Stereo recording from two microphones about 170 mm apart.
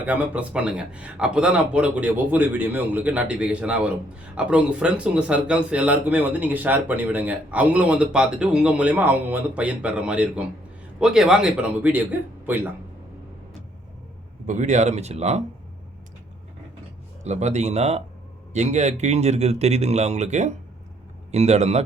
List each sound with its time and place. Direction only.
0.0 s speech: 10° right (ahead or behind)
14.4 s speech: 45° right (ahead or behind)
17.2 s speech: 40° right (ahead or behind)